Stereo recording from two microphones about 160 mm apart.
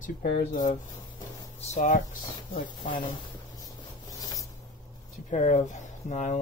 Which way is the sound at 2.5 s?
30° left (ahead or behind).